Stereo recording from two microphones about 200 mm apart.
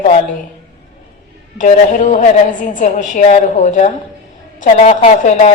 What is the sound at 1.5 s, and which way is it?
A woman's voice, 40° left (ahead or behind).